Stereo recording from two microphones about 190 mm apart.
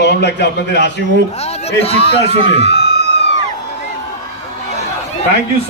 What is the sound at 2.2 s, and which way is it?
Speech, 30° right (ahead or behind).